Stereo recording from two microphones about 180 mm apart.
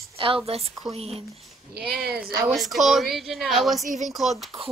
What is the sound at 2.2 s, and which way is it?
A woman's voice, centre (ahead or behind).